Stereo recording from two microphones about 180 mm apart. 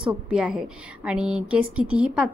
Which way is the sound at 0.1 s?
5° right (ahead or behind).